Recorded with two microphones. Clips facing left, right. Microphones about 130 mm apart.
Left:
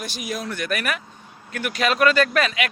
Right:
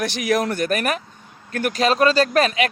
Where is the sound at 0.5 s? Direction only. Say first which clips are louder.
Right 5 dB; 40° right (ahead or behind).